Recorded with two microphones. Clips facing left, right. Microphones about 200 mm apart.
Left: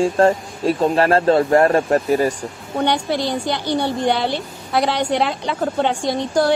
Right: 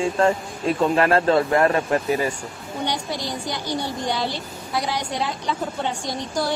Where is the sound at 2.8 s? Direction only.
65° left (ahead or behind).